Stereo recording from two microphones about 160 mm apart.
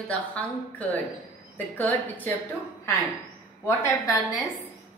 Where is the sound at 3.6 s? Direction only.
20° left (ahead or behind).